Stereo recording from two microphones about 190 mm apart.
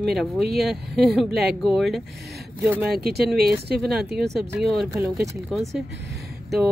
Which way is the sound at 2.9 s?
55° right (ahead or behind).